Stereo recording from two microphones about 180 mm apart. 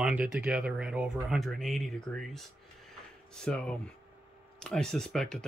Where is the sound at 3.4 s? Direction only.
5° left (ahead or behind).